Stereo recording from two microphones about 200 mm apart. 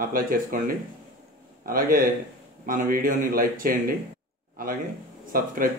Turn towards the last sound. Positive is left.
turn(degrees=-45)  # may be behind; listen again after turning